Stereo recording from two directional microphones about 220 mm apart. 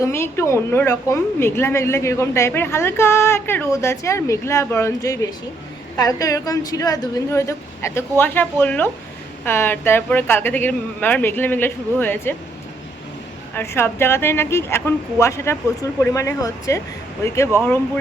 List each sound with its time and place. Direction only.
0.0 s a woman's voice: 10° left (ahead or behind)
13.5 s a woman's voice: 10° left (ahead or behind)